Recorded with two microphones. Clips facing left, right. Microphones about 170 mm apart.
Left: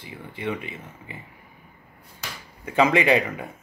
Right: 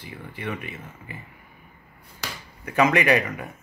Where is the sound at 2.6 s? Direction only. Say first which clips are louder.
Left 1 dB; 20° left (ahead or behind).